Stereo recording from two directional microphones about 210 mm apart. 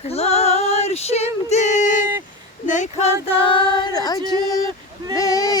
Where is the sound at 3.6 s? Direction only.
20° left (ahead or behind).